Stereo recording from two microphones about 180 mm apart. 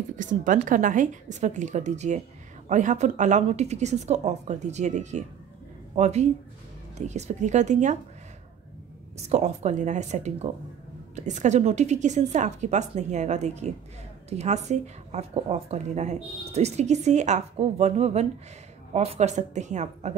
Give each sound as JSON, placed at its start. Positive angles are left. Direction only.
{"t": 0.1, "sound": "a woman's voice", "side_deg": -45}
{"t": 9.3, "sound": "a woman's voice", "side_deg": -40}